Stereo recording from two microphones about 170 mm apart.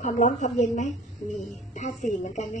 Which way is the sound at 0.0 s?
45° left (ahead or behind).